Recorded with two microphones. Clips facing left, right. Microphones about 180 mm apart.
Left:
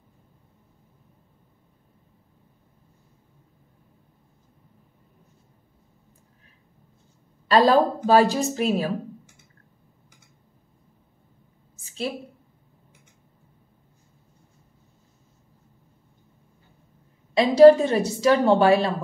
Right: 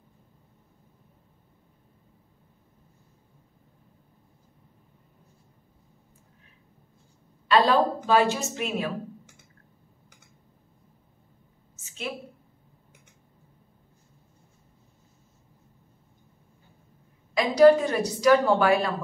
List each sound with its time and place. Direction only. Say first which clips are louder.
7.4 s a woman's voice: left 3 dB; 40° left (ahead or behind)
11.8 s a sound: left 6 dB; 35° left (ahead or behind)
17.3 s a woman's voice: left 4 dB; 30° left (ahead or behind)